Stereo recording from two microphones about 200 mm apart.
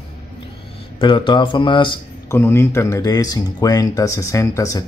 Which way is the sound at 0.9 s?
25° left (ahead or behind).